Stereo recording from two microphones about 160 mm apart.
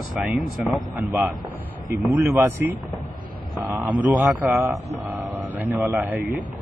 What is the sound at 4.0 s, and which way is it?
Speech, 15° right (ahead or behind).